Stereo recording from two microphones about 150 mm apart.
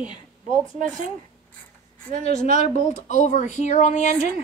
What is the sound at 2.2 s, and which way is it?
Speech, 50° left (ahead or behind).